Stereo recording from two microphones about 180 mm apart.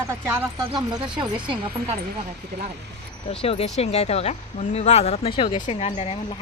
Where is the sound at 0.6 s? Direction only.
25° right (ahead or behind).